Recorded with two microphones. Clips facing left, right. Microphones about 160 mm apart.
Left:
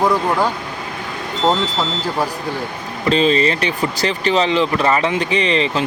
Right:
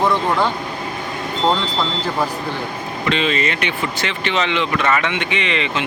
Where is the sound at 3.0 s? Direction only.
35° left (ahead or behind).